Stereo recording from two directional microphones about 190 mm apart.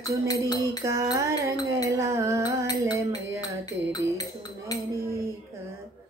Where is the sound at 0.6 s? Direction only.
15° right (ahead or behind).